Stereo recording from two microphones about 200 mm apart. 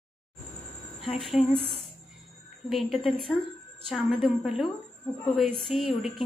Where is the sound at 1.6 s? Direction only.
30° right (ahead or behind).